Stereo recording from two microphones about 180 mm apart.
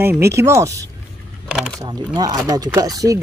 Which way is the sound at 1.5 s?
5° right (ahead or behind).